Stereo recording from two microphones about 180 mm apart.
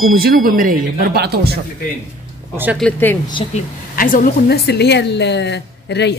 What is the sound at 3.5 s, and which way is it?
A woman's voice, 50° left (ahead or behind).